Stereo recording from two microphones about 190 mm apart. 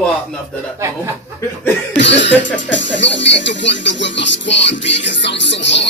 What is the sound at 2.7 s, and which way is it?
Music, 75° left (ahead or behind).